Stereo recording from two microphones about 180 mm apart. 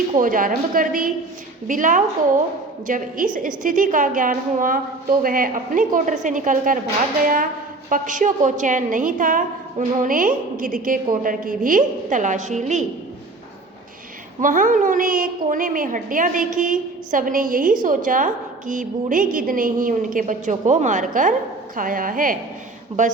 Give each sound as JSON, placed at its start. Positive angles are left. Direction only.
{"t": 0.2, "sound": "a woman's voice", "side_deg": -50}
{"t": 7.9, "sound": "a woman's voice", "side_deg": -45}
{"t": 14.4, "sound": "a woman's voice", "side_deg": -45}